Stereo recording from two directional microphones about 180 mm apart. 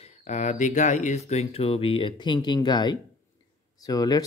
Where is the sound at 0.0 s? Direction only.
40° left (ahead or behind).